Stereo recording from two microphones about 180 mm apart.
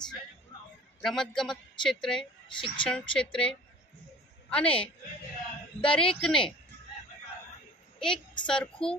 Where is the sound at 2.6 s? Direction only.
30° left (ahead or behind).